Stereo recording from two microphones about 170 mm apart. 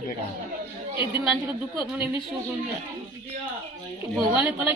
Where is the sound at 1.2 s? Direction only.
5° right (ahead or behind).